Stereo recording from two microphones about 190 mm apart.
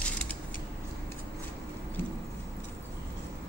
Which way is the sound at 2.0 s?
10° left (ahead or behind).